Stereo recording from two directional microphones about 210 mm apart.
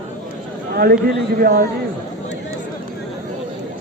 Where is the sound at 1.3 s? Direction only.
45° right (ahead or behind).